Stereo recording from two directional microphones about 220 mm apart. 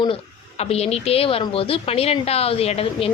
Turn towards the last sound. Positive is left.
turn(degrees=25)  # may be behind; listen again after turning